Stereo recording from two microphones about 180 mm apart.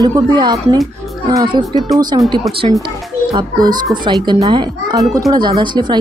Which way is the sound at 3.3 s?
20° right (ahead or behind).